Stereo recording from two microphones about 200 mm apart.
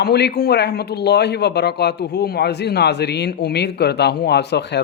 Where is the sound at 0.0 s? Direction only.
55° left (ahead or behind).